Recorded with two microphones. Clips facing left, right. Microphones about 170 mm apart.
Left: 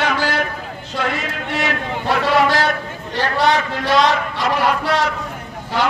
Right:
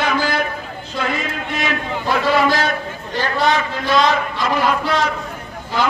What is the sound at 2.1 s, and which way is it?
A man's voice, 70° left (ahead or behind).